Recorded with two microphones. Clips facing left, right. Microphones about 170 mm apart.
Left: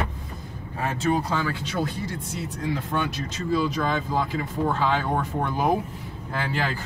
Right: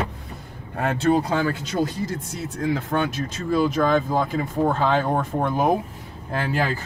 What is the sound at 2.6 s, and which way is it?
Speech, 50° right (ahead or behind).